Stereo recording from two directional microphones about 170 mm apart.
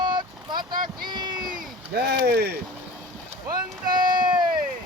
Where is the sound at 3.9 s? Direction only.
25° right (ahead or behind).